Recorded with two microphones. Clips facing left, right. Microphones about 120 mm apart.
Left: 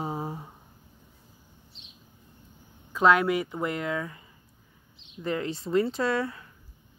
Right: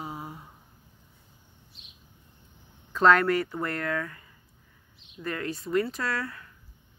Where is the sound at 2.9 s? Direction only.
10° left (ahead or behind).